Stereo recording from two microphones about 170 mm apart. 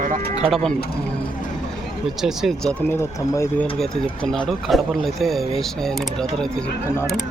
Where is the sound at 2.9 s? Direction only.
15° left (ahead or behind).